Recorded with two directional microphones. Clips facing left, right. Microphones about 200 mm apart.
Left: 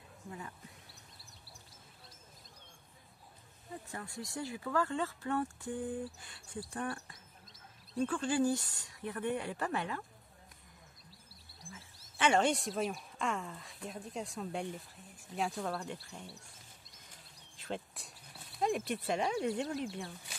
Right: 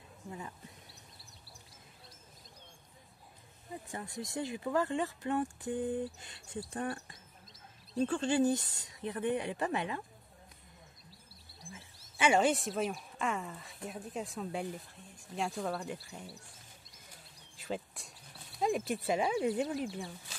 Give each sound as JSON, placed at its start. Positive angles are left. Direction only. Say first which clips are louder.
{"t": 0.8, "sound": "chirp", "louder": "right 1 dB", "side_deg": 0}
{"t": 3.9, "sound": "speech", "louder": "right 4 dB", "side_deg": -20}
{"t": 12.0, "sound": "speech", "louder": "right 2 dB", "side_deg": -5}
{"t": 16.9, "sound": "a sound", "louder": "right 2 dB", "side_deg": 0}